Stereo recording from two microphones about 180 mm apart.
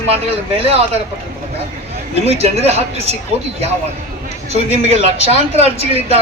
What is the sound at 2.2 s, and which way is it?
Speech, 35° right (ahead or behind).